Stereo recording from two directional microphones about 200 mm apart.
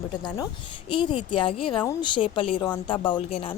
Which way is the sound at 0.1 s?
20° left (ahead or behind).